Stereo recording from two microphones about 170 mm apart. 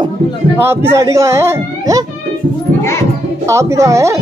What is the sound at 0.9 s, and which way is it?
Speech, 15° right (ahead or behind).